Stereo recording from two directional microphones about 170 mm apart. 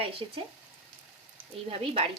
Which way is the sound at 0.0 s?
35° right (ahead or behind).